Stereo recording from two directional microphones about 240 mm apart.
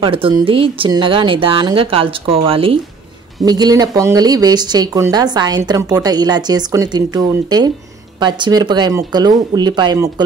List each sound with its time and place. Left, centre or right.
0.0 s a woman's voice: right